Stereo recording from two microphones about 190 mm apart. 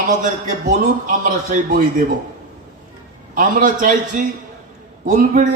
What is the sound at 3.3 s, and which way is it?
Speech, 45° right (ahead or behind).